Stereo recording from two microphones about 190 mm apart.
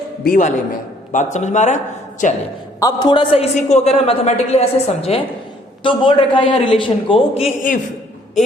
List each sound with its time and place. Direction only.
0.3 s a man's voice: 40° left (ahead or behind)
2.8 s a man's voice: 25° left (ahead or behind)